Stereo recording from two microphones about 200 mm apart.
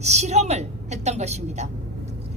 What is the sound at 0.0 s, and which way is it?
A woman's voice, 35° right (ahead or behind).